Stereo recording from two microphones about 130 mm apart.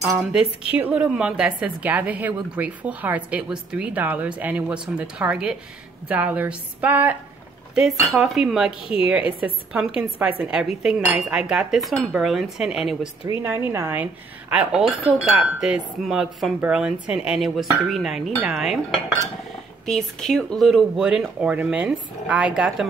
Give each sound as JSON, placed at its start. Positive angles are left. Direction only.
{"t": 0.2, "sound": "cutlery", "side_deg": -5}
{"t": 0.7, "sound": "a woman's voice", "side_deg": -10}
{"t": 8.1, "sound": "cutlery", "side_deg": 0}
{"t": 8.8, "sound": "a woman's voice", "side_deg": 45}
{"t": 9.1, "sound": "a woman's voice", "side_deg": -5}
{"t": 11.1, "sound": "cutlery", "side_deg": -5}
{"t": 13.4, "sound": "a woman's voice", "side_deg": -20}
{"t": 14.5, "sound": "cutlery", "side_deg": -5}